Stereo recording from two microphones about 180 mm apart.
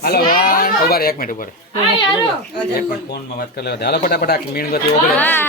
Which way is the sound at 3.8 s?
65° left (ahead or behind).